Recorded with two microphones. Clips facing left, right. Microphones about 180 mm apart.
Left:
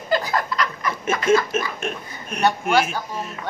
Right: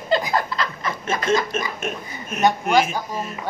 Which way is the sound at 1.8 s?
Centre (ahead or behind).